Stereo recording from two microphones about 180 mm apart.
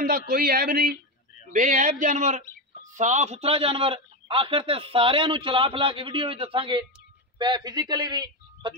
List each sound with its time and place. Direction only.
0.0 s speech: 55° right (ahead or behind)
1.5 s a man's voice: 45° right (ahead or behind); by 8.7 s 25° right (ahead or behind)